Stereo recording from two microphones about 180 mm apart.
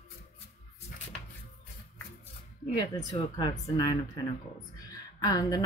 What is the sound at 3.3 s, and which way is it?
Speech, 25° left (ahead or behind).